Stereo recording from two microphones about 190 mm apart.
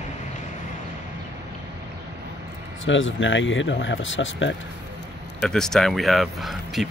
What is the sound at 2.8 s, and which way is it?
Speech, 90° left.